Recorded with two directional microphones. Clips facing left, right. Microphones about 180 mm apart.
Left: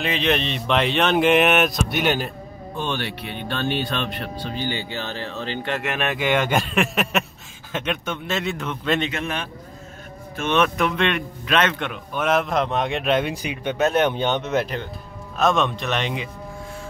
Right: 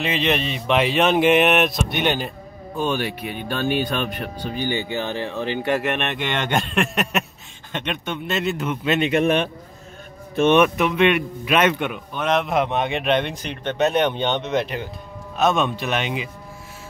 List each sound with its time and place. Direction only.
0.0 s speech: centre (ahead or behind)
2.8 s speech: 10° right (ahead or behind)
5.8 s speech: centre (ahead or behind)
10.4 s speech: 15° right (ahead or behind)
10.8 s speech: 5° right (ahead or behind)
12.1 s speech: 5° left (ahead or behind)